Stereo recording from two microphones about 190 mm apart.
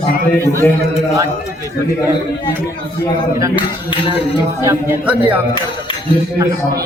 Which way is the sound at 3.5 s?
25° left (ahead or behind).